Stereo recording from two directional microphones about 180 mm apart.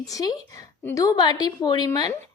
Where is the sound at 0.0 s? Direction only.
20° left (ahead or behind).